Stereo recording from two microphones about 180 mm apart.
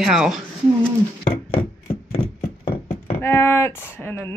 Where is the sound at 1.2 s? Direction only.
35° left (ahead or behind).